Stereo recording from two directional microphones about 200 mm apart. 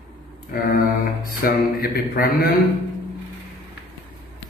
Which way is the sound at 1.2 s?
45° left (ahead or behind).